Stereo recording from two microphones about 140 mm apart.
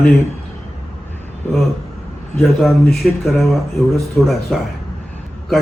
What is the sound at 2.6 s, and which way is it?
A man's voice, centre (ahead or behind).